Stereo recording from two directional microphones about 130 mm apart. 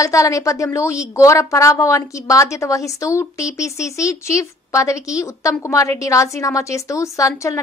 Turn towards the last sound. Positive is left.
turn(degrees=25)  # may be behind; listen again after turning